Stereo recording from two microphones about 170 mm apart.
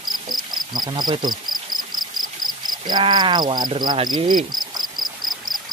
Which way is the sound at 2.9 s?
25° right (ahead or behind).